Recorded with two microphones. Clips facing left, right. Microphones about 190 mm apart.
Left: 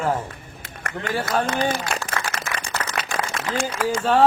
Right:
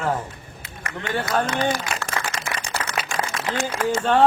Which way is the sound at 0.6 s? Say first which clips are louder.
Left 2 dB; 50° left (ahead or behind).